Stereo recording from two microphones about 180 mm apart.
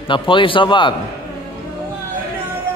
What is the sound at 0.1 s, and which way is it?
Speech, 30° left (ahead or behind).